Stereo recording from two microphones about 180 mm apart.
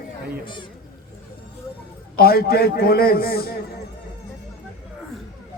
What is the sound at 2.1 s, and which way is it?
A man's voice, 60° left (ahead or behind).